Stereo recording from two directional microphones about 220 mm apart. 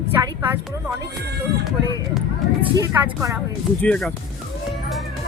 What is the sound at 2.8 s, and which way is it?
Speech, 15° right (ahead or behind).